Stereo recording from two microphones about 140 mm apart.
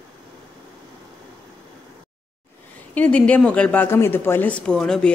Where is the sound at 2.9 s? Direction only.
10° left (ahead or behind).